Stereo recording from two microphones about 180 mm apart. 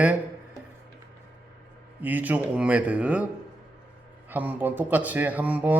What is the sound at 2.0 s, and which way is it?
Speech, 10° right (ahead or behind).